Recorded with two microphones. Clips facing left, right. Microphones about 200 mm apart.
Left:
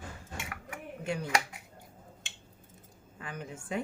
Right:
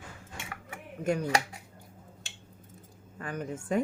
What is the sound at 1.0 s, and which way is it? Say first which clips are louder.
Speech: right 6 dB; 45° right (ahead or behind).